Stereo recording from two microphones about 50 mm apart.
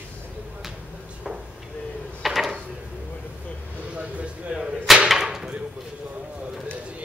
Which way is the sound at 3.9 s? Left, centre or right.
Right.